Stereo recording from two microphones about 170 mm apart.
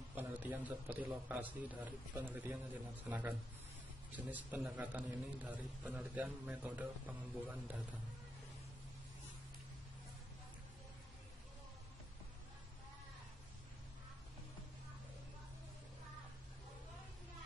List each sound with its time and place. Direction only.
0.1 s a man's voice: 10° right (ahead or behind)